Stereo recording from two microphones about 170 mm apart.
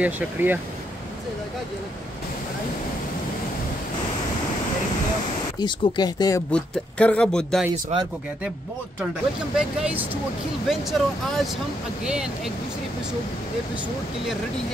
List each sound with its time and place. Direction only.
0.0 s speech: 10° right (ahead or behind)
5.6 s speech: 25° left (ahead or behind)
6.5 s a man's voice: 5° left (ahead or behind)
7.9 s speech: 40° right (ahead or behind)
9.6 s speech: 5° right (ahead or behind)